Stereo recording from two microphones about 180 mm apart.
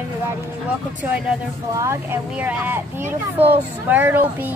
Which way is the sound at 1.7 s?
15° right (ahead or behind).